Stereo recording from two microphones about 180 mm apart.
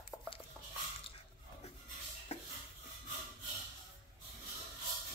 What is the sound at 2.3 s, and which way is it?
Stir, 40° left (ahead or behind).